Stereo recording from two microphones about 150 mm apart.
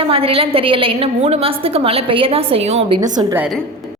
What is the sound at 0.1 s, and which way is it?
A woman's voice, 40° right (ahead or behind).